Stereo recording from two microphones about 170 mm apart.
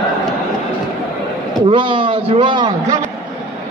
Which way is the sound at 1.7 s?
30° right (ahead or behind).